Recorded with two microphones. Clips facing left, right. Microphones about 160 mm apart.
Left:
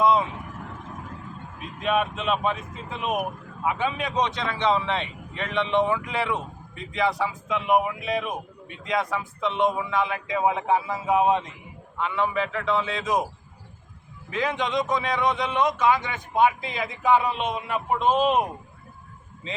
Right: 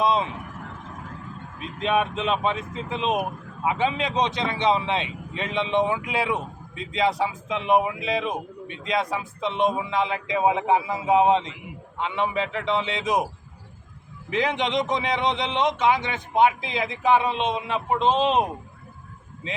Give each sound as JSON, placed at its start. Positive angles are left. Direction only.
{"t": 0.0, "sound": "speech", "side_deg": -20}
{"t": 1.8, "sound": "speech", "side_deg": -25}
{"t": 14.3, "sound": "speech", "side_deg": -20}